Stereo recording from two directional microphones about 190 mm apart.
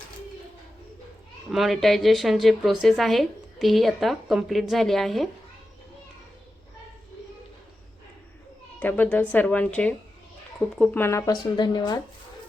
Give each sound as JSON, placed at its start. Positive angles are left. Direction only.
{"t": 1.5, "sound": "a woman's voice", "side_deg": 0}
{"t": 8.8, "sound": "speech", "side_deg": 10}